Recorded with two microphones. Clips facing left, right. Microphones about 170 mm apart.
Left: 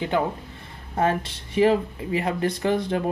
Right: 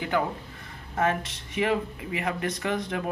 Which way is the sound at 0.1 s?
25° left (ahead or behind).